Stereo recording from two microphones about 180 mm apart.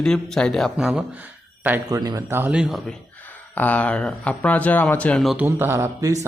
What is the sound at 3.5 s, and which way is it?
Speech, 10° left (ahead or behind).